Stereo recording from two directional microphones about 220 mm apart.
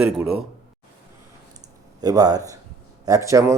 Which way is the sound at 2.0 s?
15° right (ahead or behind).